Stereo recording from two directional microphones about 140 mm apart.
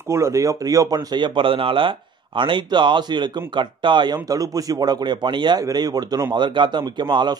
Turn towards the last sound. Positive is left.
turn(degrees=-35)  # may be behind; listen again after turning